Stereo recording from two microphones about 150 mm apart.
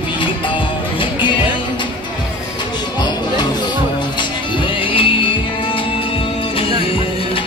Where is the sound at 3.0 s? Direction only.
30° left (ahead or behind).